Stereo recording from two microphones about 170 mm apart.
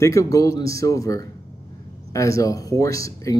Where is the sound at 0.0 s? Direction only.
20° left (ahead or behind).